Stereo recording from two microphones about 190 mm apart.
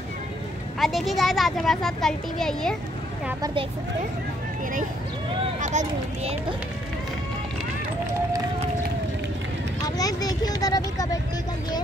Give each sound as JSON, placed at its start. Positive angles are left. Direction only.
{"t": 0.7, "sound": "a child's voice", "side_deg": 0}
{"t": 5.6, "sound": "speech", "side_deg": -40}
{"t": 9.8, "sound": "speech", "side_deg": 20}